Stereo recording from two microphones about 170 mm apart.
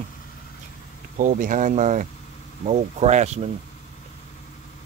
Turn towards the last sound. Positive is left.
turn(degrees=-40)  # may be behind; listen again after turning